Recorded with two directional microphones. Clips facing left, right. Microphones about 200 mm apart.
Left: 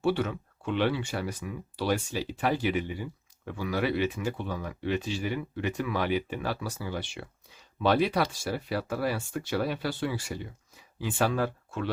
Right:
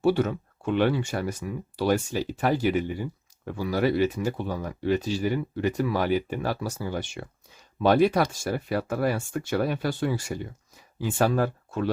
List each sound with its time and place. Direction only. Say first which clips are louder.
0.0 s speech: right 5 dB; 40° right (ahead or behind)